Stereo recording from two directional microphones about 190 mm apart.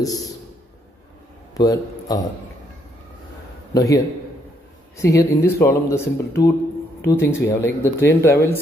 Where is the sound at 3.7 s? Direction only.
20° left (ahead or behind).